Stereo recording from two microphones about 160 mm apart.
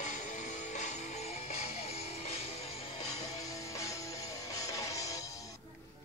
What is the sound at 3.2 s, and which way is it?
Music, 20° left (ahead or behind).